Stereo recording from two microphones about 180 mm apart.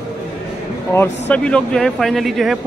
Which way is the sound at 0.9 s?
10° left (ahead or behind).